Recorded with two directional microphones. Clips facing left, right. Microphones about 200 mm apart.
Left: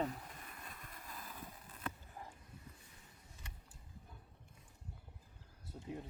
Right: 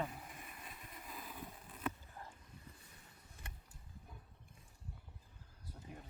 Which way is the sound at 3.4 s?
55° right (ahead or behind).